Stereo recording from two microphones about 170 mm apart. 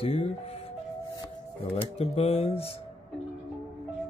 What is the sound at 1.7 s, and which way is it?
Speech, 35° left (ahead or behind).